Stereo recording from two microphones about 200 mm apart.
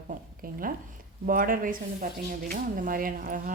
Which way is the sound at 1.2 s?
45° right (ahead or behind).